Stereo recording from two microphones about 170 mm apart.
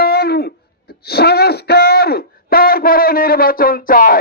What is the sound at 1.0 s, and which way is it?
A man's voice, 70° left (ahead or behind).